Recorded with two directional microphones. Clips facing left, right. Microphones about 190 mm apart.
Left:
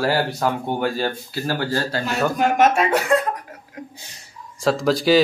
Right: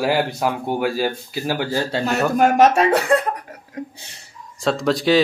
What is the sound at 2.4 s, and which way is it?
Speech, 35° right (ahead or behind).